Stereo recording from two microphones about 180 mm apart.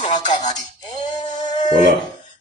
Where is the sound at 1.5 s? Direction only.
40° left (ahead or behind).